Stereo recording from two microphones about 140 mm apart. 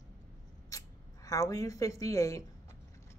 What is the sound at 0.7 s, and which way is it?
Speech, 25° left (ahead or behind).